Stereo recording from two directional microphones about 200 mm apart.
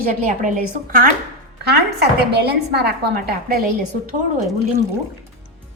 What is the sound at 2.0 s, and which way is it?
A woman's voice, 55° right (ahead or behind).